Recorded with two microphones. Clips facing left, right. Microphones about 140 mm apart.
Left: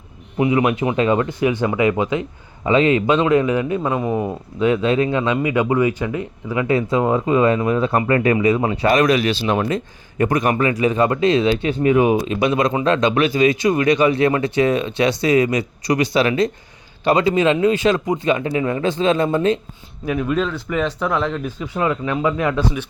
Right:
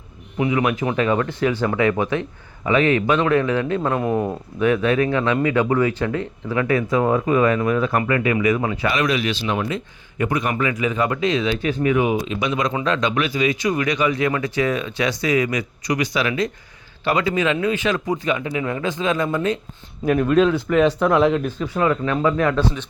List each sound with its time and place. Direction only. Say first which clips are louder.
0.3 s speech: left 3 dB; 25° left (ahead or behind)
3.8 s speech: even; 5° left (ahead or behind)
4.6 s speech: left 1 dB; 20° left (ahead or behind)
18.3 s speech: left 4 dB; 40° left (ahead or behind)
18.6 s speech: left 4 dB; 25° left (ahead or behind)
20.1 s speech: right 4 dB; 5° left (ahead or behind)
21.4 s speech: right 1 dB; 15° left (ahead or behind)